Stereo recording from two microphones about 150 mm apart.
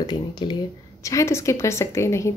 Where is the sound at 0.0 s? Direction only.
30° left (ahead or behind).